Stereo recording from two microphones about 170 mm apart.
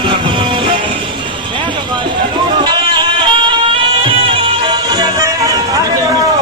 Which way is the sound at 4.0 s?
30° right (ahead or behind).